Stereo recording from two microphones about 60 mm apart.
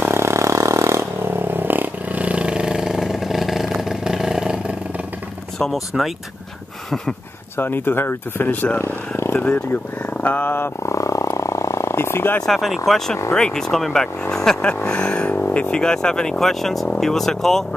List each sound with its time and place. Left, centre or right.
0.1 s vehicle: right
1.2 s vehicle: right; by 4.7 s centre
5.6 s speech: centre
7.5 s speech: left
8.7 s a sound: left
9.6 s speech: left
10.8 s wild animals: left
12.4 s speech: centre
14.9 s a sound: centre
15.2 s speech: left; by 17.6 s centre